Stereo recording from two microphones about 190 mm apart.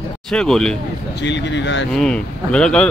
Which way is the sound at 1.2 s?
70° left (ahead or behind).